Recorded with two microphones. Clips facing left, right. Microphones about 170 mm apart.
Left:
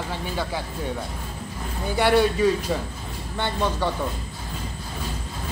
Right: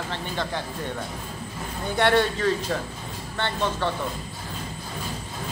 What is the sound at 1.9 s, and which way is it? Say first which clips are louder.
A man's voice: left 2 dB; 10° left (ahead or behind).